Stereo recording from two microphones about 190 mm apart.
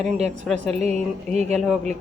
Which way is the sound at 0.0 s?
35° right (ahead or behind).